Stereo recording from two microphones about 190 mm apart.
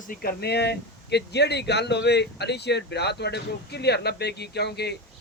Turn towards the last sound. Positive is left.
turn(degrees=60)  # may be behind; listen again after turning